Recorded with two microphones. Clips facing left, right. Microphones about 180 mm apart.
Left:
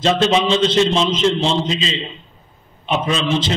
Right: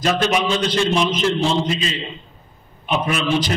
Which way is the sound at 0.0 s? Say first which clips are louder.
Left 3 dB; 25° left (ahead or behind).